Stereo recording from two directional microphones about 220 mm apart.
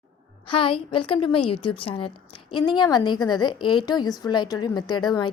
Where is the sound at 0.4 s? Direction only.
25° left (ahead or behind).